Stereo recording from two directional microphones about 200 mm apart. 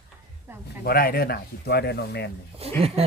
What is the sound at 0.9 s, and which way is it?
Speech, 50° left (ahead or behind).